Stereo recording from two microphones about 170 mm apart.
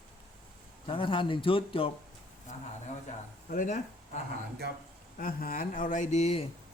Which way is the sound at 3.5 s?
55° left (ahead or behind).